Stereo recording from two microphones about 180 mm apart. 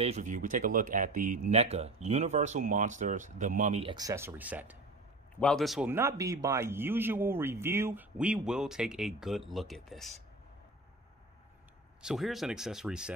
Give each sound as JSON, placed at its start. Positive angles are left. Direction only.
{"t": 0.0, "sound": "speech", "side_deg": -40}
{"t": 3.9, "sound": "speech", "side_deg": -20}
{"t": 5.4, "sound": "speech", "side_deg": 0}
{"t": 5.9, "sound": "speech", "side_deg": -15}
{"t": 12.0, "sound": "speech", "side_deg": 0}